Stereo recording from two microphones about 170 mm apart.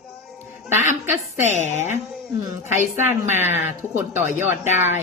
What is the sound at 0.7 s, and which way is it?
A woman's voice, 45° left (ahead or behind).